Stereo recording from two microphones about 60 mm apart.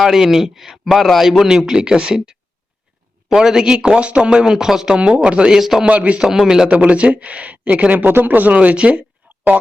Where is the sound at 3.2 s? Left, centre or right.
Centre.